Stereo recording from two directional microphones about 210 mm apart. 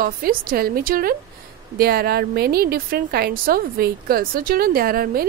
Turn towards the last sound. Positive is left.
turn(degrees=-45)  # may be behind; listen again after turning